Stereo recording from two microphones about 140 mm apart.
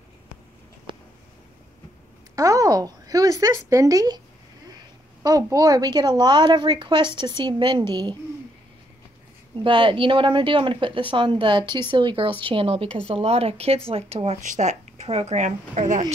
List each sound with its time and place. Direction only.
2.3 s speech: 25° right (ahead or behind)
5.2 s a woman's voice: 25° right (ahead or behind)
9.6 s a woman's voice: 35° right (ahead or behind); by 16.1 s 60° right (ahead or behind)